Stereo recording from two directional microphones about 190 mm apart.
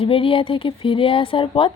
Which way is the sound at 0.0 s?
30° left (ahead or behind).